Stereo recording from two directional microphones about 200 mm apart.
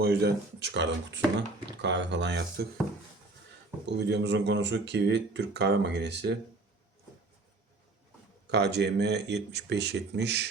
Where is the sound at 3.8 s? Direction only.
60° right (ahead or behind).